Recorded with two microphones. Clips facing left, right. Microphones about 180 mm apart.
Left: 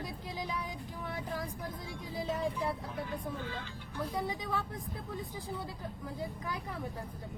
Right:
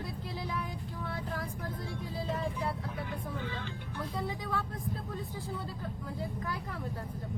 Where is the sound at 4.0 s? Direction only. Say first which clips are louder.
Left 2 dB; 15° left (ahead or behind).